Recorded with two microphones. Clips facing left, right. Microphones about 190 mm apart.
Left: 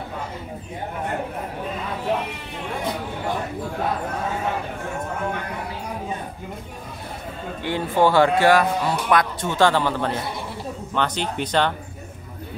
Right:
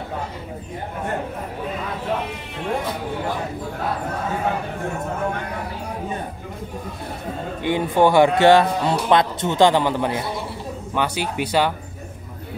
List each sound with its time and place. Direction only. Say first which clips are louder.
7.6 s a man's voice: right 2 dB; 15° right (ahead or behind)